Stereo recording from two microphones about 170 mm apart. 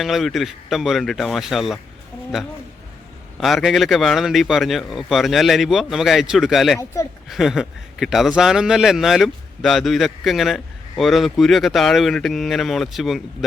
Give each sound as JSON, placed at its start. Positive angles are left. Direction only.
{"t": 0.0, "sound": "a man's voice", "side_deg": 0}
{"t": 3.3, "sound": "a man's voice", "side_deg": 0}
{"t": 6.7, "sound": "speech", "side_deg": 20}
{"t": 7.3, "sound": "a man's voice", "side_deg": 0}